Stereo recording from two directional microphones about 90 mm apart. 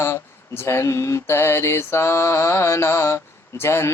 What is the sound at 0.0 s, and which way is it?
Mantra, 25° left (ahead or behind).